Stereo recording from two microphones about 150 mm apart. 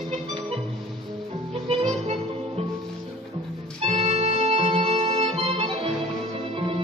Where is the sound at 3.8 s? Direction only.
45° right (ahead or behind).